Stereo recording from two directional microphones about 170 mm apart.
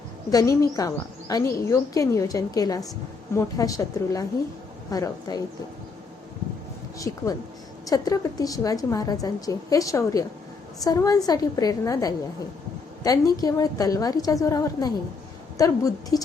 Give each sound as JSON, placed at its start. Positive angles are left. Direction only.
{"t": 0.3, "sound": "a woman's voice", "side_deg": 20}
{"t": 7.9, "sound": "a woman's voice", "side_deg": 20}